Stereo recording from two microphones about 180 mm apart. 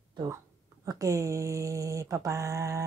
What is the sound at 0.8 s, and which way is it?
Mantra, 20° right (ahead or behind).